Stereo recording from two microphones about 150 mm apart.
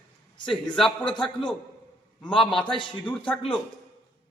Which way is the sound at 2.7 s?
35° left (ahead or behind).